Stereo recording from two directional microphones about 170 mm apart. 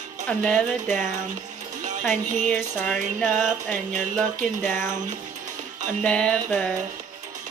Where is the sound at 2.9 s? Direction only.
5° left (ahead or behind).